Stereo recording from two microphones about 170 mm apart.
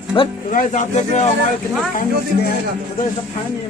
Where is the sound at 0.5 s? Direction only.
50° left (ahead or behind).